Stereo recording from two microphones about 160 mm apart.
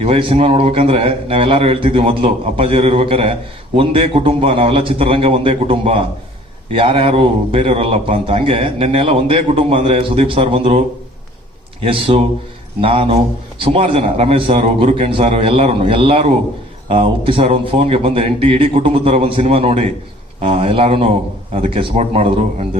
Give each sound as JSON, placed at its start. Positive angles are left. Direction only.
{"t": 0.0, "sound": "a man's voice", "side_deg": -35}
{"t": 11.8, "sound": "a man's voice", "side_deg": -35}